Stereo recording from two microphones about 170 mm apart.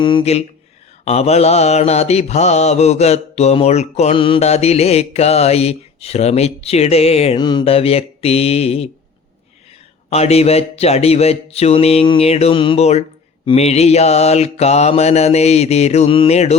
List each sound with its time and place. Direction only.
0.0 s mantra: 30° left (ahead or behind)
10.1 s mantra: 40° left (ahead or behind)